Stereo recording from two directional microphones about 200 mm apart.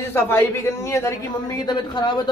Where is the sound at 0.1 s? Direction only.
10° left (ahead or behind).